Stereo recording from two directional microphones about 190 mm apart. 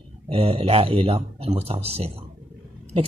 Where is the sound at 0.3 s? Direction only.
30° right (ahead or behind).